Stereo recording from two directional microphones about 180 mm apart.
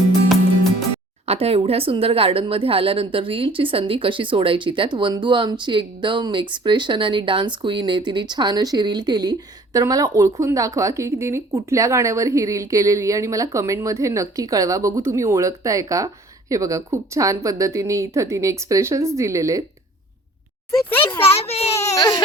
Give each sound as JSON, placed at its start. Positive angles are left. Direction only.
{"t": 1.2, "sound": "speech", "side_deg": -35}
{"t": 21.4, "sound": "speech", "side_deg": 35}
{"t": 21.8, "sound": "speech", "side_deg": 20}